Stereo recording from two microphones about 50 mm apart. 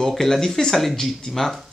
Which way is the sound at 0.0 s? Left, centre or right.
Centre.